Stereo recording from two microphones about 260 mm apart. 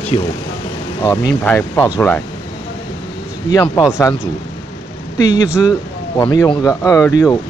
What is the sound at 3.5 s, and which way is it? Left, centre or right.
Speech, centre.